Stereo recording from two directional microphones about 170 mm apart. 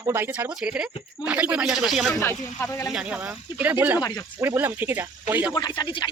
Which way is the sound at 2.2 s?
15° left (ahead or behind).